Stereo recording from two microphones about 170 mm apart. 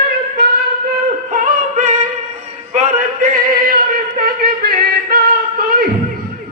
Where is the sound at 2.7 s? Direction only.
50° right (ahead or behind).